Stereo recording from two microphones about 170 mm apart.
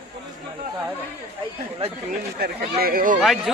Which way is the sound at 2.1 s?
65° right (ahead or behind).